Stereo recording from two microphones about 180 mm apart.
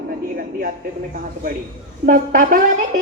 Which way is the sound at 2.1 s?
50° right (ahead or behind).